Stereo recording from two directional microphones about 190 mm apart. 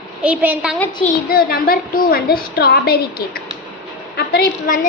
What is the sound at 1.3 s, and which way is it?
A woman's voice, 50° left (ahead or behind).